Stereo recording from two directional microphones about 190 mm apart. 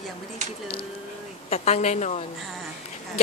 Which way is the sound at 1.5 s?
35° left (ahead or behind).